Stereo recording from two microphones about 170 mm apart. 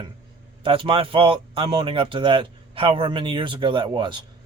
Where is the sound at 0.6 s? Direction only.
30° right (ahead or behind).